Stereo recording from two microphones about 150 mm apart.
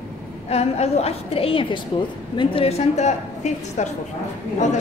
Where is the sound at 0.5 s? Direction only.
45° left (ahead or behind).